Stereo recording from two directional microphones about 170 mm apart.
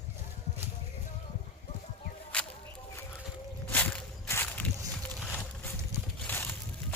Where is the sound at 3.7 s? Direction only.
10° left (ahead or behind).